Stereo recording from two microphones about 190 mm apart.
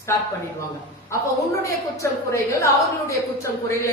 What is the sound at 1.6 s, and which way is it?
Speech, 15° left (ahead or behind).